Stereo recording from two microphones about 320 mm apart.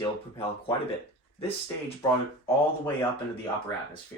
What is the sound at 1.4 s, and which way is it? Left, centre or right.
Speech, centre.